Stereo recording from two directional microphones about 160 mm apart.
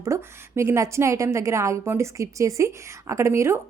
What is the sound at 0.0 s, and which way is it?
A woman's voice, 15° right (ahead or behind).